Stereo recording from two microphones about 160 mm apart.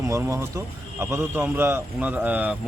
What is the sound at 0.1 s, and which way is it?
Speech, 15° right (ahead or behind).